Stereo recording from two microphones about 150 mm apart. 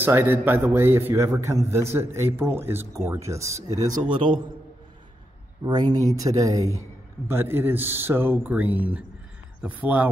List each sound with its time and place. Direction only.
0.0 s a man's voice: 15° right (ahead or behind)
4.1 s a man's voice: 35° right (ahead or behind)
5.6 s a man's voice: 30° right (ahead or behind); by 10.0 s 10° right (ahead or behind)